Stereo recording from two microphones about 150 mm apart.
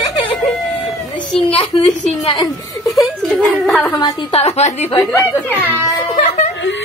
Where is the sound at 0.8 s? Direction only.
10° left (ahead or behind).